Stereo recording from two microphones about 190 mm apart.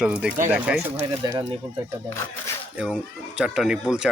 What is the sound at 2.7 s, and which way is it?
Speech, 5° right (ahead or behind).